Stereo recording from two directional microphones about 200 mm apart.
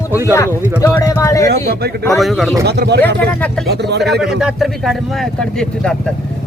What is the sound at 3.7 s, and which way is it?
Speech, 55° right (ahead or behind).